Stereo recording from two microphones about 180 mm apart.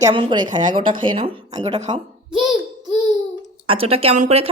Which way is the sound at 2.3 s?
Centre (ahead or behind).